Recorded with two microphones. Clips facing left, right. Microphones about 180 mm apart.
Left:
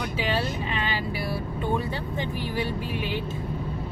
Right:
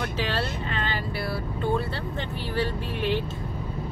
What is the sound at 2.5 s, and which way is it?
Speech, 10° left (ahead or behind).